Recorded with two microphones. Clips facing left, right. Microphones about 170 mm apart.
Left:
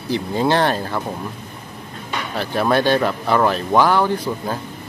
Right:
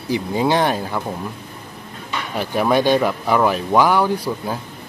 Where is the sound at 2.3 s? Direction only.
10° right (ahead or behind).